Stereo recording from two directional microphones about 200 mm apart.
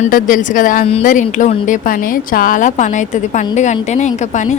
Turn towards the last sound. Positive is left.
turn(degrees=35)  # may be behind; listen again after turning